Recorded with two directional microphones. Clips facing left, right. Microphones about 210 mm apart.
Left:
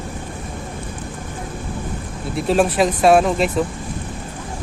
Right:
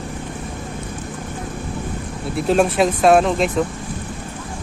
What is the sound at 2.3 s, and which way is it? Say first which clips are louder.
Speech: even; centre (ahead or behind).